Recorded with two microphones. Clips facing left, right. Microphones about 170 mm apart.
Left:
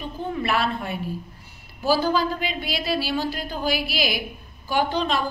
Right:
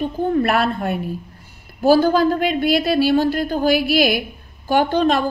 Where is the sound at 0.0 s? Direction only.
55° right (ahead or behind).